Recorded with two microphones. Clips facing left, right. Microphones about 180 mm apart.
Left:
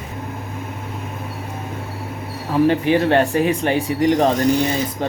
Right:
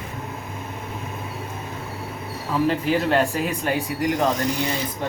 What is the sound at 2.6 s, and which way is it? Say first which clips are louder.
Speech: left 5 dB; 65° left (ahead or behind).